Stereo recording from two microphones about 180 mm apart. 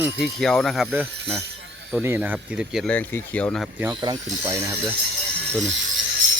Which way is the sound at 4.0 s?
20° right (ahead or behind).